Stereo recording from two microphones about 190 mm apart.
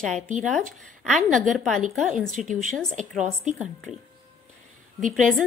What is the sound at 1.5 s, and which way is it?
Speech, centre (ahead or behind).